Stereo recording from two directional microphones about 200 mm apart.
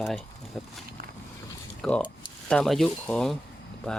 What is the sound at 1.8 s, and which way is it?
Speech, centre (ahead or behind).